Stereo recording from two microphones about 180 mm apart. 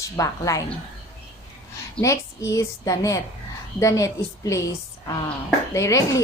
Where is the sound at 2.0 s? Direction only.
15° left (ahead or behind).